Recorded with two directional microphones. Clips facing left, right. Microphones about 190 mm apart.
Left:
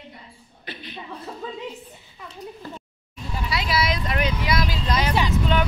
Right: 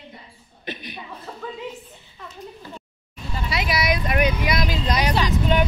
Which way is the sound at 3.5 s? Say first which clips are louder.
Right 1 dB; 20° right (ahead or behind).